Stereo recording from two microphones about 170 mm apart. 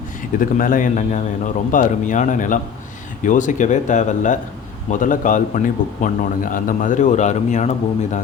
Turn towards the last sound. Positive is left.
turn(degrees=45)  # may be behind; listen again after turning